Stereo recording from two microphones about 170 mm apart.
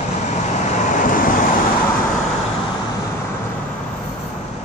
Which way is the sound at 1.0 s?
55° left (ahead or behind).